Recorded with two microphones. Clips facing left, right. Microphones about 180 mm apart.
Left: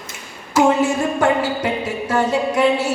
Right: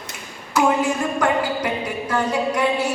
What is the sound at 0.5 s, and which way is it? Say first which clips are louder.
Speech: left 3 dB; 25° left (ahead or behind).